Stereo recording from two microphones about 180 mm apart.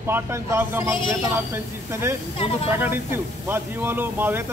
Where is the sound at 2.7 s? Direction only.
10° right (ahead or behind).